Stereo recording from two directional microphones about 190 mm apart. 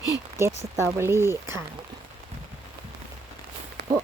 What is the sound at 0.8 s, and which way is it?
Speech, 15° right (ahead or behind).